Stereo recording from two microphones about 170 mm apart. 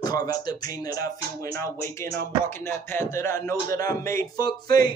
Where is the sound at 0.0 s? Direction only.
20° left (ahead or behind).